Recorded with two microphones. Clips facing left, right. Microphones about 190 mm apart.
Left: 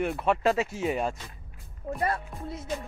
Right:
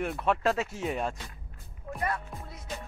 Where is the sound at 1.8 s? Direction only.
40° left (ahead or behind).